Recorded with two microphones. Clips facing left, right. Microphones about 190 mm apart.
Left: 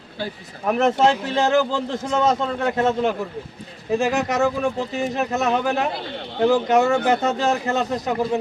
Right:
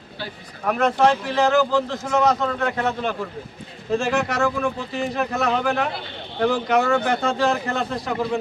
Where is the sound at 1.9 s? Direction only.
25° left (ahead or behind).